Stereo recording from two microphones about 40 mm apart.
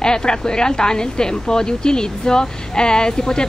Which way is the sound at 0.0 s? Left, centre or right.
Centre.